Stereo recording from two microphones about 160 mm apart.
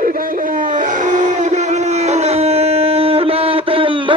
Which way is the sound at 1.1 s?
50° right (ahead or behind).